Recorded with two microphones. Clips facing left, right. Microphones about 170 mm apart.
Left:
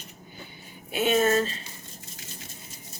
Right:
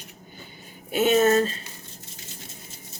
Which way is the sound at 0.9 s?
40° right (ahead or behind).